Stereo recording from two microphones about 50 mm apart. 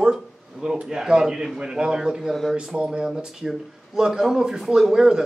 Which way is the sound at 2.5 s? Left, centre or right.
Centre.